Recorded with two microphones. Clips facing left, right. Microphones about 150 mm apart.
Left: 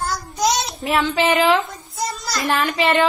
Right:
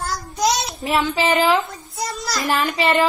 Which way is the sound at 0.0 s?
Centre (ahead or behind).